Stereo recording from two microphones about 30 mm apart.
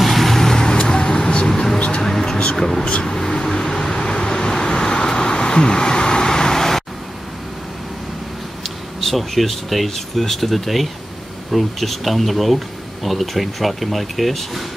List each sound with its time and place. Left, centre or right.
0.0 s vehicle: centre; by 1.3 s left
1.5 s a sound: centre
1.8 s music: left
2.0 s a sound: centre
3.1 s vehicle: left
9.0 s speech: centre